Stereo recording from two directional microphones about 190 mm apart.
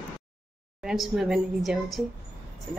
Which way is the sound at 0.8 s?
5° right (ahead or behind).